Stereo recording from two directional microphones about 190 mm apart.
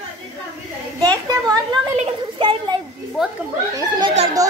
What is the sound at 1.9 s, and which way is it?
Speech, 30° right (ahead or behind).